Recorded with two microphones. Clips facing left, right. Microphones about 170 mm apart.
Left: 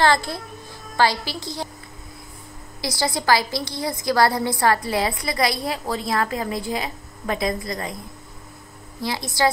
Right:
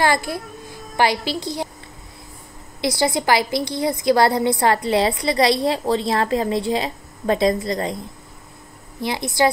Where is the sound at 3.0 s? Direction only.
20° right (ahead or behind).